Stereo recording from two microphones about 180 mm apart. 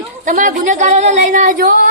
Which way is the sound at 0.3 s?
45° right (ahead or behind).